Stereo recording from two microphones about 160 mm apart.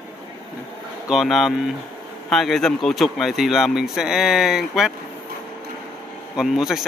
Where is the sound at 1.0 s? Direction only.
Centre (ahead or behind).